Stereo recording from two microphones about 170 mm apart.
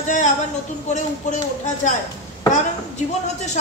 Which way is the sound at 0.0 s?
45° left (ahead or behind).